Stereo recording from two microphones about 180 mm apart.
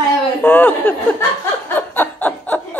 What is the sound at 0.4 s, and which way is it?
Speech, 10° left (ahead or behind).